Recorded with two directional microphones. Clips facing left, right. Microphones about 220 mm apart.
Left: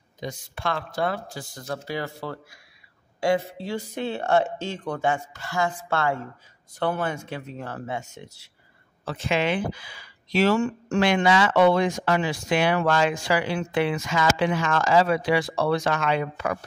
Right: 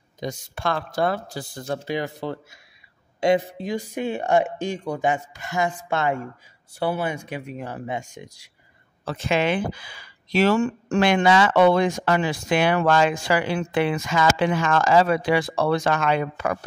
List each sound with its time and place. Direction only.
0.2 s speech: 40° right (ahead or behind); by 8.5 s 15° right (ahead or behind)
9.0 s speech: 45° right (ahead or behind)